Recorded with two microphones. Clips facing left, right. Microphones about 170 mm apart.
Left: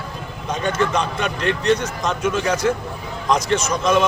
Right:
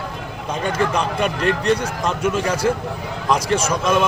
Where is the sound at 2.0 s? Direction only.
10° right (ahead or behind).